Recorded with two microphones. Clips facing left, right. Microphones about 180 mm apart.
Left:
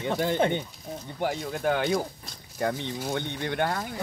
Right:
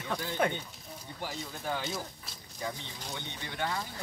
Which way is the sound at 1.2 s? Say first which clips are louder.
Left 11 dB; 65° left (ahead or behind).